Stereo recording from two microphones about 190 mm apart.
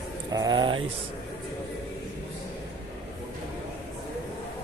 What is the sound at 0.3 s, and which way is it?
Speech, 20° right (ahead or behind).